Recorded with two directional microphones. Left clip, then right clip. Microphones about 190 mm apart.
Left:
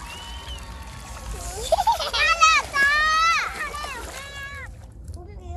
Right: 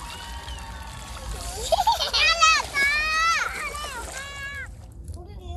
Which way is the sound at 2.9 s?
45° left (ahead or behind).